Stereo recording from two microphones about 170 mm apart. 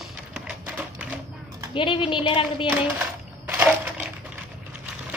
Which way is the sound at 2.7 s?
10° right (ahead or behind).